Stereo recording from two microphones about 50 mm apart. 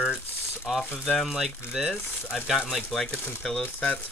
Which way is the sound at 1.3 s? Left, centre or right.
Centre.